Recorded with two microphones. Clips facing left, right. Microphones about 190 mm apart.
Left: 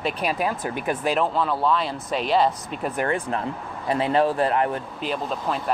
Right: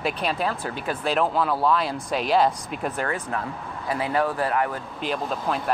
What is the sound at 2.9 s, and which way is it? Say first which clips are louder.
Speech: left 3 dB; 25° left (ahead or behind).